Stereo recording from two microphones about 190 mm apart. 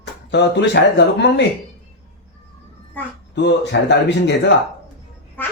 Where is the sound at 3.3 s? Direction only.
65° left (ahead or behind).